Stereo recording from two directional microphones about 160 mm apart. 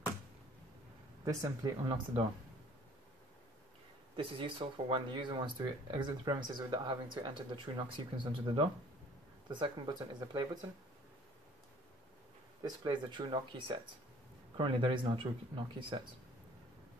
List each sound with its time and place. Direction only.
1.2 s speech: 20° right (ahead or behind)
4.2 s speech: 35° right (ahead or behind)
12.6 s speech: 25° right (ahead or behind)